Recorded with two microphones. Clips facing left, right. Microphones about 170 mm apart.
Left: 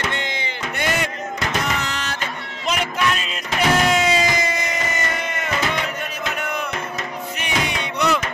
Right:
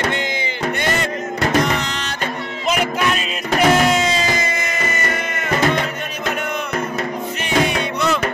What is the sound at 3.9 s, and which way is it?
Music, 5° left (ahead or behind).